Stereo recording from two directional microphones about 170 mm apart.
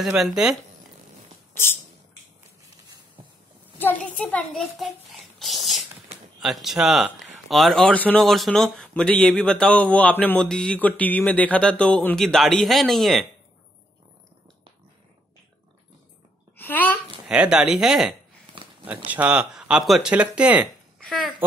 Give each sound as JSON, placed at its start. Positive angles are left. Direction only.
{"t": 0.0, "sound": "speech", "side_deg": 0}
{"t": 3.7, "sound": "a child's voice", "side_deg": 10}
{"t": 6.1, "sound": "a sound", "side_deg": -40}
{"t": 6.4, "sound": "speech", "side_deg": 0}
{"t": 16.5, "sound": "a child's voice", "side_deg": 10}
{"t": 17.3, "sound": "speech", "side_deg": -5}
{"t": 21.0, "sound": "speech", "side_deg": 5}